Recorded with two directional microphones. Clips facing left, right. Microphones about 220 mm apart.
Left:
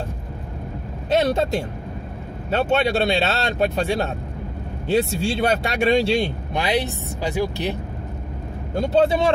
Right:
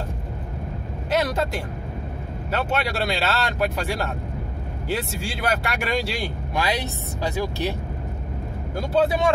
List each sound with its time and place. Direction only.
1.1 s vehicle: 25° left (ahead or behind)
2.5 s speech: 25° left (ahead or behind)
8.7 s speech: 25° left (ahead or behind)